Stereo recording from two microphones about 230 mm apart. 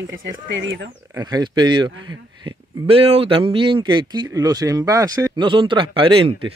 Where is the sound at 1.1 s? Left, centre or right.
Centre.